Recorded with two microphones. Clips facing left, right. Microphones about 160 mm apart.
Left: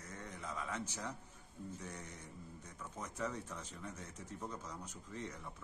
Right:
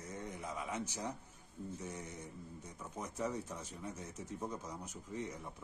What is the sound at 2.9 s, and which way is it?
Speech, 15° right (ahead or behind).